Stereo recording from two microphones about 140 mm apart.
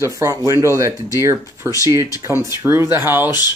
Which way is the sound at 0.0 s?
25° right (ahead or behind).